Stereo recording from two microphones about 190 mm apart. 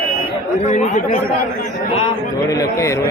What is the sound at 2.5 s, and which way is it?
Speech, 15° left (ahead or behind).